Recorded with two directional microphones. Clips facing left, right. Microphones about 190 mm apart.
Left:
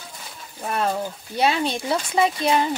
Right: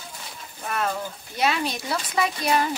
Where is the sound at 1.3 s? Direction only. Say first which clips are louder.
Left 3 dB; 30° left (ahead or behind).